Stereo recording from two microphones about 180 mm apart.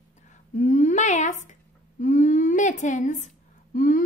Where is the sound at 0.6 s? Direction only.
45° left (ahead or behind).